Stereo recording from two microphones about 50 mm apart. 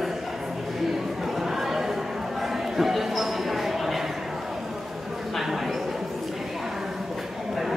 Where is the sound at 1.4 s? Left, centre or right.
Centre.